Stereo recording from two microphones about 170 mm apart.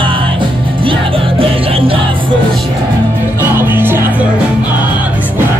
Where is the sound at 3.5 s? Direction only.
15° right (ahead or behind).